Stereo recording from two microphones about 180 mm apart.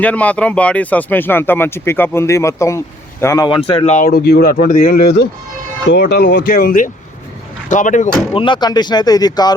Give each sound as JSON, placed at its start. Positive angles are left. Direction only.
{"t": 0.0, "sound": "speech", "side_deg": 10}
{"t": 3.9, "sound": "speech", "side_deg": 55}
{"t": 4.5, "sound": "speech", "side_deg": 50}
{"t": 8.3, "sound": "speech", "side_deg": 25}